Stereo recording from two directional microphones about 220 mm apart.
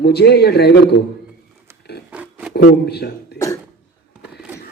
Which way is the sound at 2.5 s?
45° left (ahead or behind).